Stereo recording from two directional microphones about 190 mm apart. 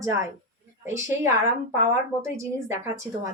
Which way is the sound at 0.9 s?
15° right (ahead or behind).